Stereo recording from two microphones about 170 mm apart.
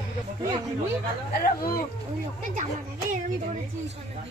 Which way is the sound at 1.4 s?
60° left (ahead or behind).